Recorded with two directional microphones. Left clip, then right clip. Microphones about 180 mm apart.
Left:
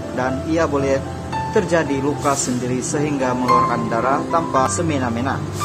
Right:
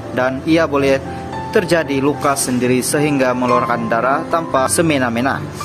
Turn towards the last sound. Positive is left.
turn(degrees=-30)  # may be behind; listen again after turning